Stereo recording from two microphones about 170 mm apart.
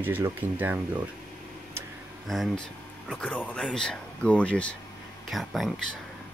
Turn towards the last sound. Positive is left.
turn(degrees=0)  # may be behind; listen again after turning